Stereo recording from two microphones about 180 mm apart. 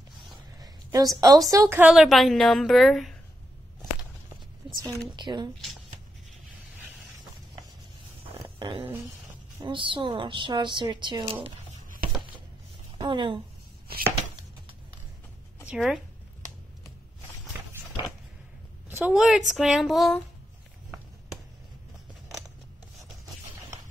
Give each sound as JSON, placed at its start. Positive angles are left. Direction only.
{"t": 0.6, "sound": "a woman's voice", "side_deg": -20}
{"t": 4.8, "sound": "speech", "side_deg": -25}
{"t": 8.4, "sound": "a sound", "side_deg": -20}
{"t": 9.7, "sound": "speech", "side_deg": -30}
{"t": 12.9, "sound": "a woman's voice", "side_deg": -25}
{"t": 15.7, "sound": "a woman's voice", "side_deg": 0}
{"t": 18.9, "sound": "a woman's voice", "side_deg": -10}